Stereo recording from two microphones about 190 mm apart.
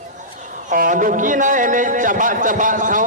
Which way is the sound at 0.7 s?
45° right (ahead or behind).